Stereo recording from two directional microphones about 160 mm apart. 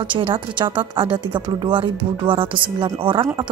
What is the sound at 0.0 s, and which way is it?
Speech, 30° right (ahead or behind).